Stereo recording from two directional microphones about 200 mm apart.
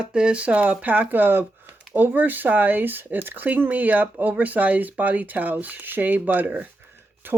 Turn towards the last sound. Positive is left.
turn(degrees=-10)  # may be behind; listen again after turning